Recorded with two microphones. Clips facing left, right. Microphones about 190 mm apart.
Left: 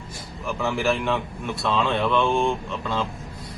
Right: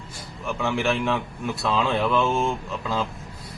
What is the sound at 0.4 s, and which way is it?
Speech, centre (ahead or behind).